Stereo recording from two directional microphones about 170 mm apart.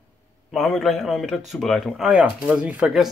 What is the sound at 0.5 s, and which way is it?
Speech, centre (ahead or behind).